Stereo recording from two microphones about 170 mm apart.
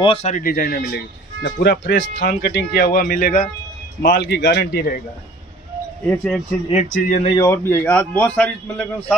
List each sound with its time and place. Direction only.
0.0 s speech: 35° left (ahead or behind)
0.3 s speech: 55° left (ahead or behind)
4.0 s a man's voice: 70° left (ahead or behind)
6.0 s speech: 5° left (ahead or behind)
6.7 s speech: 45° left (ahead or behind)
7.4 s a man's voice: 15° left (ahead or behind)